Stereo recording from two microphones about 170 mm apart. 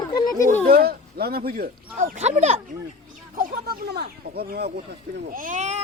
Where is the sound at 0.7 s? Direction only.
65° right (ahead or behind).